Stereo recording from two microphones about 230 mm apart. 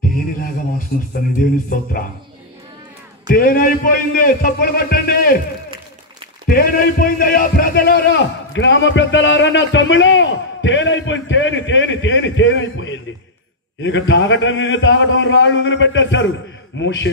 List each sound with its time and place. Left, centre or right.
0.9 s a man's voice: left
3.3 s a man's voice: left
6.4 s a man's voice: left